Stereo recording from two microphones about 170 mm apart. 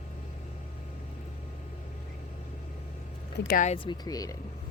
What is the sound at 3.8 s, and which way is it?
Speech, 25° left (ahead or behind).